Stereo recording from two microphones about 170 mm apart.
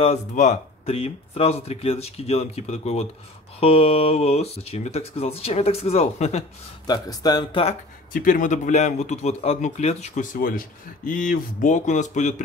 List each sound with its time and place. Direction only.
0.0 s speech: 40° left (ahead or behind)
6.9 s speech: 25° left (ahead or behind)
8.1 s a man's voice: 55° left (ahead or behind)